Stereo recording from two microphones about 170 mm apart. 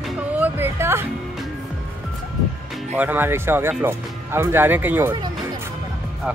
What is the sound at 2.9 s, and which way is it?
Speech, 10° right (ahead or behind).